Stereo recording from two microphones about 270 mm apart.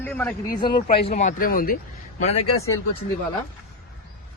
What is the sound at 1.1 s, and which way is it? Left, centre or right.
A man's voice, left.